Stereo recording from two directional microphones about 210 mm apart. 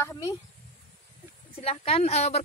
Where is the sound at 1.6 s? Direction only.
30° left (ahead or behind).